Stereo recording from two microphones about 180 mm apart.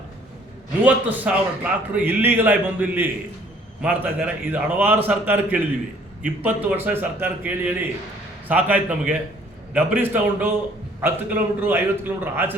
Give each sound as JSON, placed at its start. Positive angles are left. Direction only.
{"t": 0.9, "sound": "a man's voice", "side_deg": -10}